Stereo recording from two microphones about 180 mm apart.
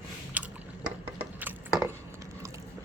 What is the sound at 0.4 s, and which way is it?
Biting, 10° right (ahead or behind).